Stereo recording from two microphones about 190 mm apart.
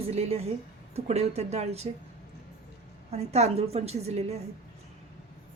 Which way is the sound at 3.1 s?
35° right (ahead or behind).